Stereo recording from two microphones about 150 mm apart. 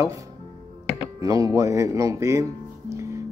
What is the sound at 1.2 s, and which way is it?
Speech, 25° right (ahead or behind).